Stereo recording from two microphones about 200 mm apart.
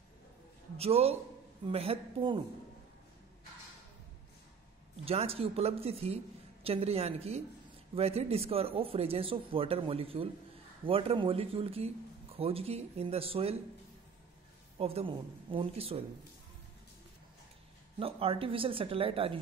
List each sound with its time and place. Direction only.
0.7 s a man's voice: 30° right (ahead or behind)
5.0 s a man's voice: 30° right (ahead or behind)
14.8 s a man's voice: 30° right (ahead or behind)
17.9 s a man's voice: 30° right (ahead or behind)